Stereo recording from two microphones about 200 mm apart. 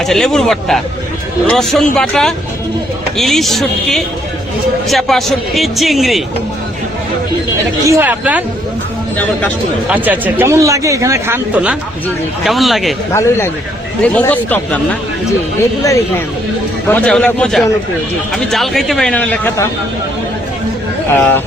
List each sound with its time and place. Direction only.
0.0 s a man's voice: centre (ahead or behind)
7.9 s a man's voice: 10° right (ahead or behind)
9.9 s a man's voice: 10° right (ahead or behind)
14.0 s speech: 5° left (ahead or behind)
16.9 s a man's voice: 5° left (ahead or behind)
21.1 s speech: 10° left (ahead or behind)